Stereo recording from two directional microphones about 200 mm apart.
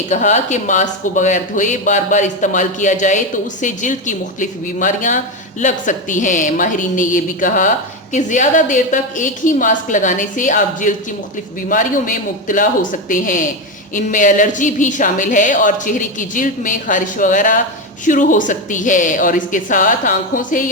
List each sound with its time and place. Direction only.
0.1 s a woman's voice: 35° left (ahead or behind)